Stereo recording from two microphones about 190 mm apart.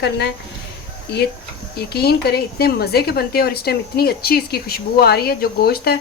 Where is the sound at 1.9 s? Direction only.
55° left (ahead or behind).